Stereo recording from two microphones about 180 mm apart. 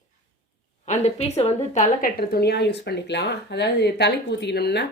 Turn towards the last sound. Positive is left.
turn(degrees=65)  # may be behind; listen again after turning